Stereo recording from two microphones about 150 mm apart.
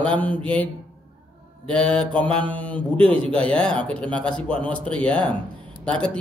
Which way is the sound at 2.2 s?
35° right (ahead or behind).